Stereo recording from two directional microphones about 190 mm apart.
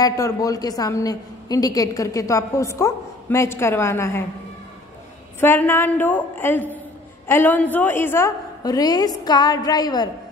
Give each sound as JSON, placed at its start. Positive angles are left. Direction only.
{"t": 0.0, "sound": "a woman's voice", "side_deg": 20}
{"t": 5.4, "sound": "a woman's voice", "side_deg": 10}